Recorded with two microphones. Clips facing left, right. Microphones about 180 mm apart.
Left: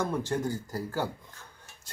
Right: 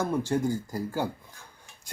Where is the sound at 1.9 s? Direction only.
15° right (ahead or behind).